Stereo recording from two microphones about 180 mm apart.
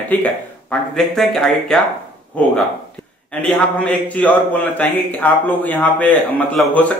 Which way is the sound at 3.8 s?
10° left (ahead or behind).